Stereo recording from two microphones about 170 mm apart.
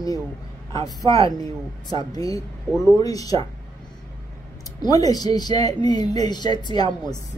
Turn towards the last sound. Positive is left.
turn(degrees=25)  # may be behind; listen again after turning